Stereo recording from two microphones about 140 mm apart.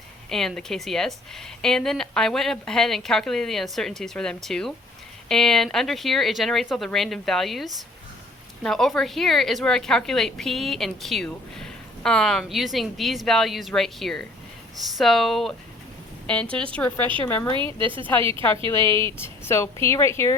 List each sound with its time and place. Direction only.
0.3 s a woman's voice: 5° left (ahead or behind)
17.7 s a woman's voice: 35° right (ahead or behind)
18.7 s speech: 20° left (ahead or behind)